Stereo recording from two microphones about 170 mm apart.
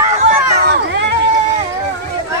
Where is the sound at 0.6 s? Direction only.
75° right (ahead or behind).